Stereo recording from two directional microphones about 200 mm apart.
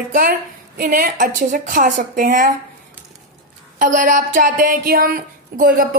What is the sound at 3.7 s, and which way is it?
Speech, 40° right (ahead or behind).